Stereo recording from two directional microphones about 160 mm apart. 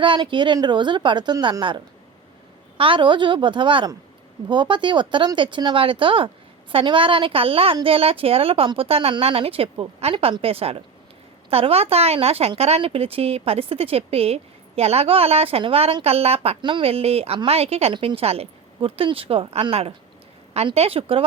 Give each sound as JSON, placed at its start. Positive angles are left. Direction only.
{"t": 0.0, "sound": "a woman's voice", "side_deg": -30}